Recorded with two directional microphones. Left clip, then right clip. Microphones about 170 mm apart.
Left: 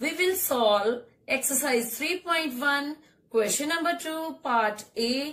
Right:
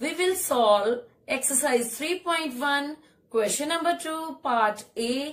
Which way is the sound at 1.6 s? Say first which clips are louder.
Right 2 dB; centre (ahead or behind).